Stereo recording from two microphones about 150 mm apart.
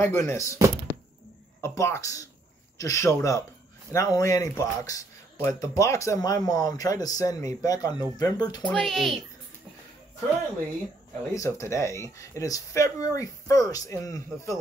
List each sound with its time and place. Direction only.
0.0 s speech: 15° left (ahead or behind)
1.6 s speech: 20° left (ahead or behind)
8.6 s speech: 5° left (ahead or behind)
11.3 s speech: 20° left (ahead or behind)